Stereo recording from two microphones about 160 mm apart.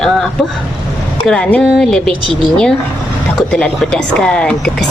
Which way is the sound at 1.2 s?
5° left (ahead or behind).